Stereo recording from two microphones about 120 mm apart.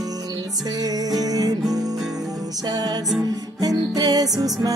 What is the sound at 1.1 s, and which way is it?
Music, 30° right (ahead or behind).